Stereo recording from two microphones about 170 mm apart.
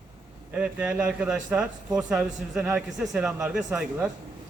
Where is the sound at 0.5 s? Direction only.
10° right (ahead or behind).